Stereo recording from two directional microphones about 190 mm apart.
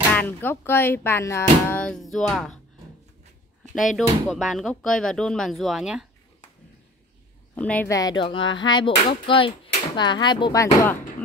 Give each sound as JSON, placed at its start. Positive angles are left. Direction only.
{"t": 0.1, "sound": "speech", "side_deg": 10}
{"t": 3.7, "sound": "speech", "side_deg": 0}
{"t": 7.5, "sound": "speech", "side_deg": 5}